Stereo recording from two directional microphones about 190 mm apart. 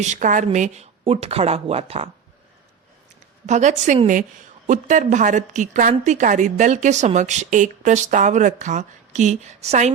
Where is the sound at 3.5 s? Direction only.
40° right (ahead or behind).